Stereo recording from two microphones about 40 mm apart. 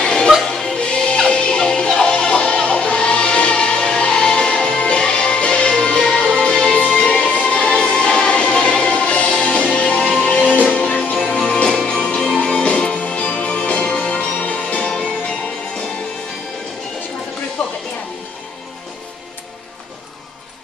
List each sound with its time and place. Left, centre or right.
0.0 s music: left
10.0 s music: centre
10.3 s music: left
11.2 s music: centre
12.4 s music: left
14.9 s music: centre